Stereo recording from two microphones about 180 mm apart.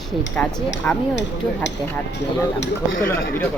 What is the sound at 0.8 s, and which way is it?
Speech, 10° left (ahead or behind).